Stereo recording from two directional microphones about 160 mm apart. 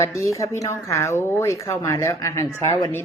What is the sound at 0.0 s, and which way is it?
A woman's voice, 20° left (ahead or behind).